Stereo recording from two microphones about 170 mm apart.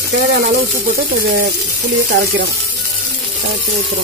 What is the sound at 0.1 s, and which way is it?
Speech, 65° right (ahead or behind).